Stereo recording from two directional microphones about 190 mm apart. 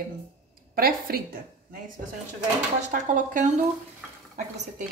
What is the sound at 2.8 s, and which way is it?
Speech, 40° right (ahead or behind).